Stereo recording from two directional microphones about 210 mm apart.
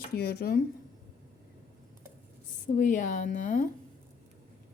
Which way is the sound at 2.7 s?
40° left (ahead or behind).